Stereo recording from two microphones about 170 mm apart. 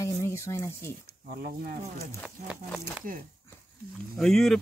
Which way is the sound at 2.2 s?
5° right (ahead or behind).